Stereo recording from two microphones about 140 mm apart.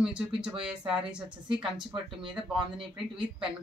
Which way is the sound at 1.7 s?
35° right (ahead or behind).